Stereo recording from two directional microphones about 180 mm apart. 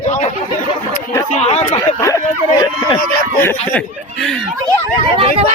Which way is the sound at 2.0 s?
15° left (ahead or behind).